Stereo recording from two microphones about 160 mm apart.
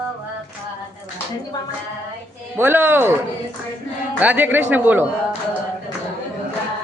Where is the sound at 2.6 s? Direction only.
10° right (ahead or behind).